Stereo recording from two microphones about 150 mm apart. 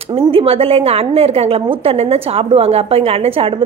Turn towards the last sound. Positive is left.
turn(degrees=-35)  # may be behind; listen again after turning